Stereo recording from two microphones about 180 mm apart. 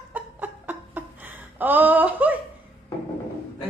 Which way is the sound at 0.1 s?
10° right (ahead or behind).